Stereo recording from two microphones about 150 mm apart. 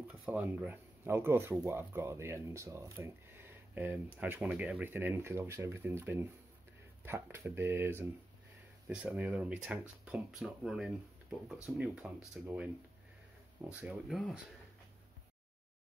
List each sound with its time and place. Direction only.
0.1 s speech: 10° right (ahead or behind)
13.7 s speech: 10° right (ahead or behind)